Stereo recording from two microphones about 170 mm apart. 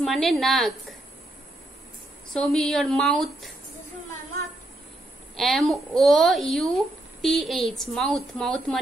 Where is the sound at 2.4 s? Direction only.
5° left (ahead or behind).